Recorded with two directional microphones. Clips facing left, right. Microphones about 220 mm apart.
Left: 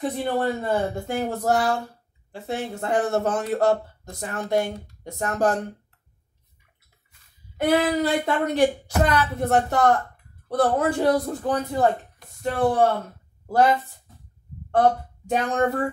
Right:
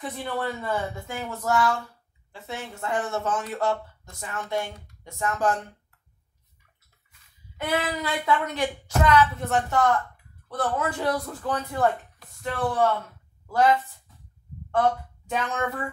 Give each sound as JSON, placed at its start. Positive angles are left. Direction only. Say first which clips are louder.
{"t": 0.0, "sound": "speech", "louder": "left 6 dB", "side_deg": 40}
{"t": 7.6, "sound": "a woman's voice", "louder": "left 7 dB", "side_deg": 35}